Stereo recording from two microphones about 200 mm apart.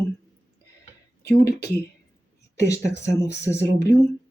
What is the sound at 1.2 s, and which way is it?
Speech, 55° left (ahead or behind).